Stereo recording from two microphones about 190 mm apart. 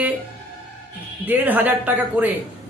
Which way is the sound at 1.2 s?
10° right (ahead or behind).